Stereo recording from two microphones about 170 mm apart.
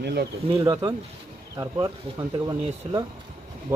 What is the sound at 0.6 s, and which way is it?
A man's voice, 20° right (ahead or behind).